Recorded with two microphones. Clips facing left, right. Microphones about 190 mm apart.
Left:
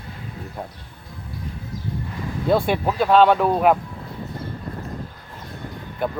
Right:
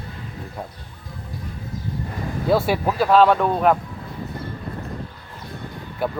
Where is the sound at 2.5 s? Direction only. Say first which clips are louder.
Even; 5° right (ahead or behind).